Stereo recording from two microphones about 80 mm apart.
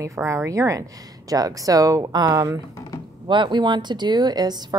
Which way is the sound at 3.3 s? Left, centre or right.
Right.